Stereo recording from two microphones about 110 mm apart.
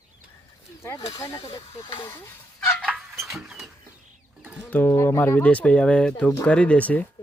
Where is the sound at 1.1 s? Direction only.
30° left (ahead or behind).